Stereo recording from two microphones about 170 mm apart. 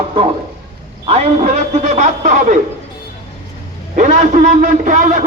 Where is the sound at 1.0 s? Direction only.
40° right (ahead or behind).